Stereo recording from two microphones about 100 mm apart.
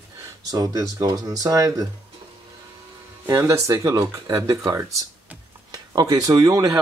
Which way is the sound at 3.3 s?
30° right (ahead or behind).